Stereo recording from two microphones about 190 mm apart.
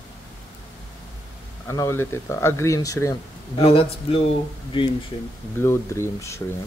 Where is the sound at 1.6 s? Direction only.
15° left (ahead or behind).